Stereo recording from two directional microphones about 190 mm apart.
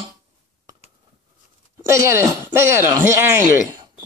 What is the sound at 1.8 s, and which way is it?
A man's voice, 15° right (ahead or behind).